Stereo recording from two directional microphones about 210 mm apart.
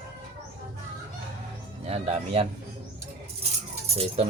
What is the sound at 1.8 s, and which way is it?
Speech, 30° right (ahead or behind).